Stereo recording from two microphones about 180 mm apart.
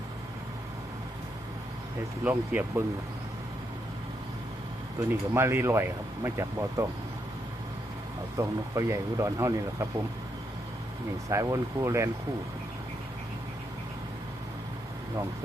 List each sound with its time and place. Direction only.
2.2 s speech: 10° right (ahead or behind)
4.9 s speech: 15° right (ahead or behind)
8.4 s speech: 15° right (ahead or behind)
11.3 s speech: 15° right (ahead or behind)